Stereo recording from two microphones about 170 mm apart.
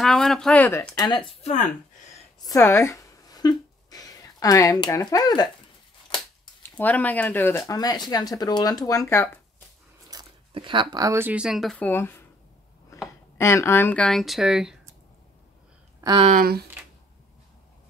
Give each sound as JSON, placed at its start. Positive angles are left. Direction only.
{"t": 0.0, "sound": "speech", "side_deg": 0}
{"t": 0.9, "sound": "speech", "side_deg": 25}
{"t": 1.4, "sound": "speech", "side_deg": 45}
{"t": 2.4, "sound": "a sound", "side_deg": 20}
{"t": 6.8, "sound": "speech", "side_deg": 10}
{"t": 10.0, "sound": "speech", "side_deg": -25}
{"t": 13.4, "sound": "speech", "side_deg": 15}
{"t": 16.0, "sound": "speech", "side_deg": -25}
{"t": 16.3, "sound": "speech", "side_deg": -60}